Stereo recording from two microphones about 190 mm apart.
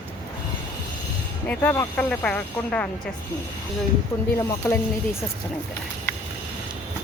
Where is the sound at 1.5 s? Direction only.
10° left (ahead or behind).